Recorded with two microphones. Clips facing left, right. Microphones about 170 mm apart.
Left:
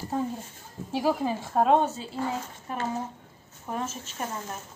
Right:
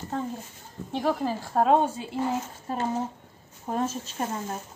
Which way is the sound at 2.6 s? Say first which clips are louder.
Right 2 dB; 30° right (ahead or behind).